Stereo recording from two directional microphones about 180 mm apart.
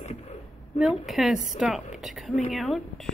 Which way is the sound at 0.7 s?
Centre (ahead or behind).